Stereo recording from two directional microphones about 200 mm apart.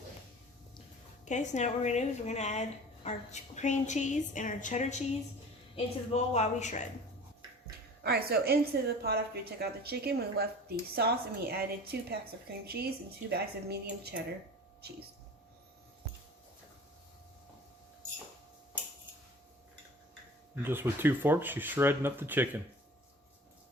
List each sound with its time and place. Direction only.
1.2 s speech: 35° left (ahead or behind)
8.0 s a woman's voice: 50° right (ahead or behind)
20.6 s speech: 10° right (ahead or behind)